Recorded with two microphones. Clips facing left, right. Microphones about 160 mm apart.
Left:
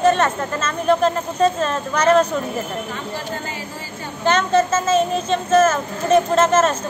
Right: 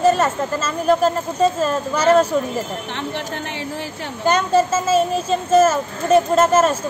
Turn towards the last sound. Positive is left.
turn(degrees=-10)  # may be behind; listen again after turning